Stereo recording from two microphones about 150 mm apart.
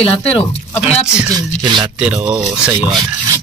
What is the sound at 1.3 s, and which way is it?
Speech, 30° right (ahead or behind).